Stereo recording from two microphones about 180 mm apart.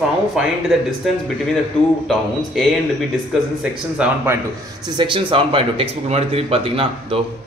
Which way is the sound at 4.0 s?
5° right (ahead or behind).